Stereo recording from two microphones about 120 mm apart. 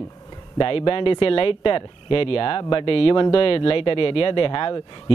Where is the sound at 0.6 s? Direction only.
50° left (ahead or behind).